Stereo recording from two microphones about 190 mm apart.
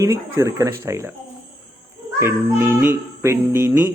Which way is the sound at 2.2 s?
10° right (ahead or behind).